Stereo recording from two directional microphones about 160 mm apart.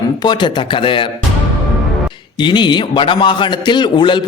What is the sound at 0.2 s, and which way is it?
Speech, 30° left (ahead or behind).